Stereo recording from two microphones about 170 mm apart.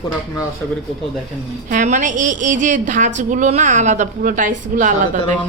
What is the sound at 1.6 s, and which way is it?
A woman's voice, 50° right (ahead or behind).